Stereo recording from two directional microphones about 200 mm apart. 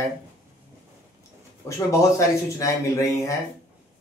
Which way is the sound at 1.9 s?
15° left (ahead or behind).